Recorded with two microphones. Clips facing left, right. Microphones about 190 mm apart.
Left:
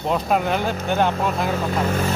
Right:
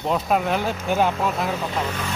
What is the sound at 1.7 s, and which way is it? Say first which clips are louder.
Speech: left 5 dB; 45° left (ahead or behind).